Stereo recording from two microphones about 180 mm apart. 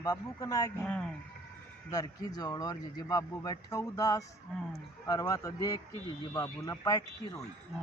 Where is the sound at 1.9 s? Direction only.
20° left (ahead or behind).